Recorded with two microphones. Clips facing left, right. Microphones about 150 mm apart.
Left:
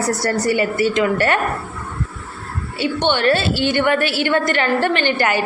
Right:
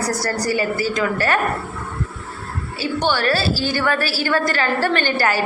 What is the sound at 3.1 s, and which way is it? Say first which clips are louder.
Speech: left 3 dB; 25° left (ahead or behind).